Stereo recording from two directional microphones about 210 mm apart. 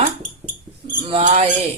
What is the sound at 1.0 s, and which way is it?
Speech, 30° right (ahead or behind).